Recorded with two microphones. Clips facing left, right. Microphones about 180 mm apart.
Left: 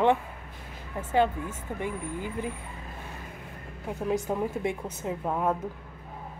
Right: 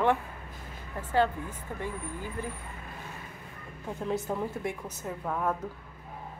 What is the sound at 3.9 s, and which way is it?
Speech, 15° left (ahead or behind).